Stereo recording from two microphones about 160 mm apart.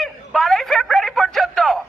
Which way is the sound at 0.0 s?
Centre (ahead or behind).